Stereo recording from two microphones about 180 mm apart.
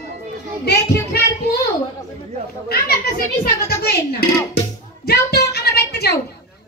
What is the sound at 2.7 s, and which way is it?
Speech, 60° left (ahead or behind).